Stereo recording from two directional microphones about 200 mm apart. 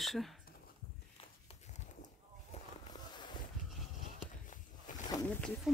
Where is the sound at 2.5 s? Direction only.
35° left (ahead or behind).